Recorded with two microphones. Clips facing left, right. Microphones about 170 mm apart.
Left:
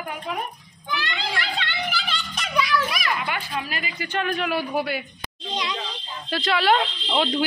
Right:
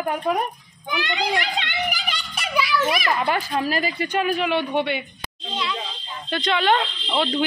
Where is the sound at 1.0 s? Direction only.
20° right (ahead or behind).